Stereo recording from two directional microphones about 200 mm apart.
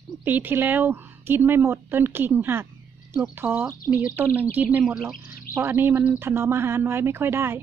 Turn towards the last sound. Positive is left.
turn(degrees=-10)  # may be behind; listen again after turning